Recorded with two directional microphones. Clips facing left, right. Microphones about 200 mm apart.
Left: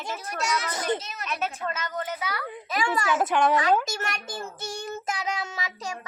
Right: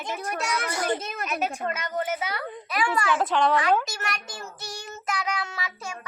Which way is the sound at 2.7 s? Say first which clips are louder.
Even; 25° left (ahead or behind).